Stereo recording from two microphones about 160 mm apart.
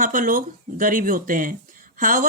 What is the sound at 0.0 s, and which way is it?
Speech, 55° right (ahead or behind).